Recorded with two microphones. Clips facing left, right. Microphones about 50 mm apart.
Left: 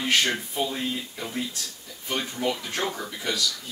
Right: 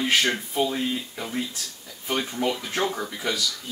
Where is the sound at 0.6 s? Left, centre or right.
Centre.